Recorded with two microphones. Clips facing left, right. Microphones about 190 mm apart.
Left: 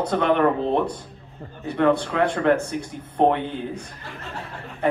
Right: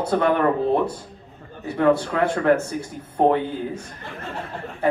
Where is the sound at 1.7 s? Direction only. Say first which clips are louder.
Right 1 dB; 5° right (ahead or behind).